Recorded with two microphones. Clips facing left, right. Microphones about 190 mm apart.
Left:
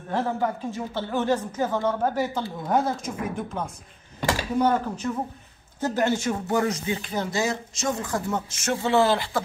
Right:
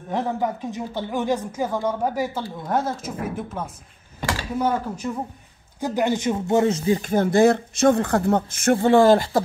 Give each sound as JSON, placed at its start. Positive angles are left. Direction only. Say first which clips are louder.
{"t": 0.1, "sound": "speech", "louder": "right 1 dB", "side_deg": -15}
{"t": 6.9, "sound": "speech", "louder": "right 8 dB", "side_deg": -45}